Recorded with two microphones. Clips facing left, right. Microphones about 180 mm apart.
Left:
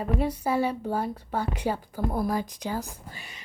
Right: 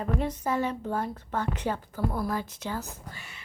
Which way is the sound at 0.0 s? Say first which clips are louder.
Left 2 dB; 10° left (ahead or behind).